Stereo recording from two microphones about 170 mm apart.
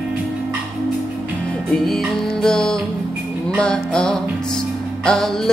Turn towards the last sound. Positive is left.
turn(degrees=0)  # may be behind; listen again after turning